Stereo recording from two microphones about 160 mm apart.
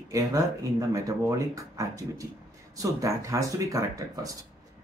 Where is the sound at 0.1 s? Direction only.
20° right (ahead or behind).